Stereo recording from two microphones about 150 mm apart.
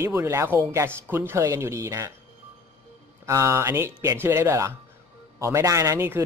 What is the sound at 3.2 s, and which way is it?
Speech, 20° right (ahead or behind).